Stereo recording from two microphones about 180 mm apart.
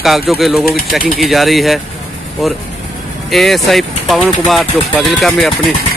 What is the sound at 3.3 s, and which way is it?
Speech, centre (ahead or behind).